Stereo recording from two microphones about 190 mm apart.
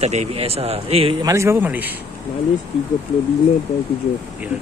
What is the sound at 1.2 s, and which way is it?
Speech, 15° right (ahead or behind).